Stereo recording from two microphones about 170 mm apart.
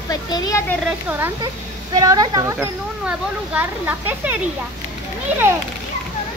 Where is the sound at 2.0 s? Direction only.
20° right (ahead or behind).